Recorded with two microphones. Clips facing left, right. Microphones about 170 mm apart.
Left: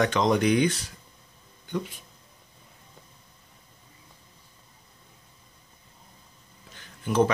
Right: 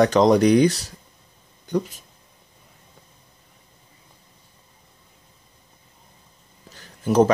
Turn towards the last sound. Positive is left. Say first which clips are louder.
# right 6 dB
turn(degrees=-40)  # may be behind; listen again after turning